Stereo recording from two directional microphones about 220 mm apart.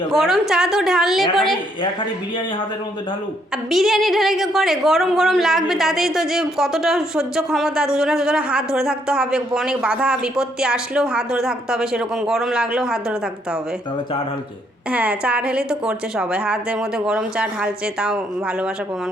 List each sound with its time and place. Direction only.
0.1 s a woman's voice: centre (ahead or behind)
3.7 s a woman's voice: centre (ahead or behind)
14.8 s a woman's voice: 5° right (ahead or behind)